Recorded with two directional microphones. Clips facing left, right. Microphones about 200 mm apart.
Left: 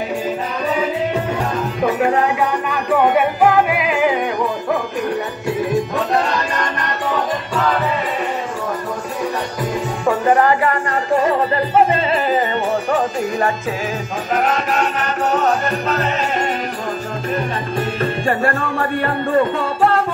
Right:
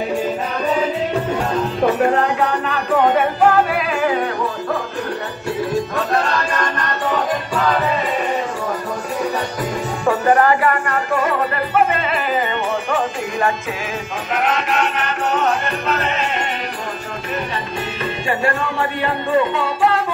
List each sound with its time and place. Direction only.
2.1 s music: 10° left (ahead or behind)
5.9 s music: 20° left (ahead or behind)
10.4 s music: 20° left (ahead or behind)
14.3 s music: 40° left (ahead or behind)
18.2 s music: 50° left (ahead or behind)